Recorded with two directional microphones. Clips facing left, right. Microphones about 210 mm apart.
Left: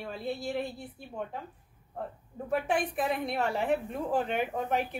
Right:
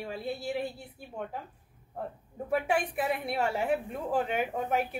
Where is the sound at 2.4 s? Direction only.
10° right (ahead or behind).